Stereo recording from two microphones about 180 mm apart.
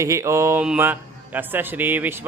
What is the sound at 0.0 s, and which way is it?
A man's voice, 15° right (ahead or behind).